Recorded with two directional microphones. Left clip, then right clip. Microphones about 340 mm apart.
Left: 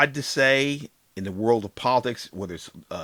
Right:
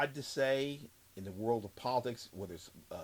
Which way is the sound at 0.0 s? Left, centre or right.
Left.